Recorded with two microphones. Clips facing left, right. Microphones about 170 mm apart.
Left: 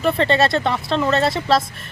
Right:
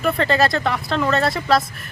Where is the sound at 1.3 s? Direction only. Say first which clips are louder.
Even; centre (ahead or behind).